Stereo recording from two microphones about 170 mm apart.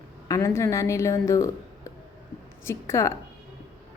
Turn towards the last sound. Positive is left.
turn(degrees=15)  # may be behind; listen again after turning